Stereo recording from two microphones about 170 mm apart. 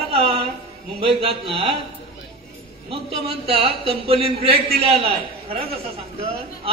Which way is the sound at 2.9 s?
35° right (ahead or behind).